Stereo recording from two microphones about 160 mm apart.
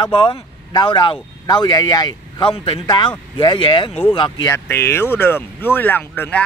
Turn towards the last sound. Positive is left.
turn(degrees=10)  # may be behind; listen again after turning